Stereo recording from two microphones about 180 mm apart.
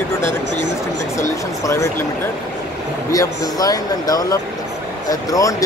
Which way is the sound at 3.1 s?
20° left (ahead or behind).